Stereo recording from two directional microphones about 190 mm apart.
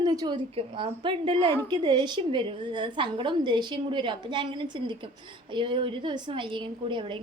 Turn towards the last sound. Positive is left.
turn(degrees=-25)  # may be behind; listen again after turning